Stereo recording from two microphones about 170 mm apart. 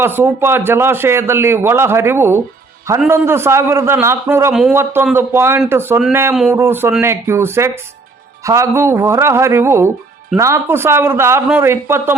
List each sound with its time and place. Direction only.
0.0 s a man's voice: 10° right (ahead or behind)